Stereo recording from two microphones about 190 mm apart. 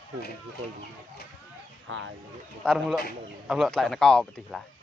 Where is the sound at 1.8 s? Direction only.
90° right.